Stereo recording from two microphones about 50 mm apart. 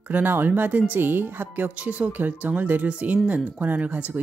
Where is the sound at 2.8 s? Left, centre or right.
Right.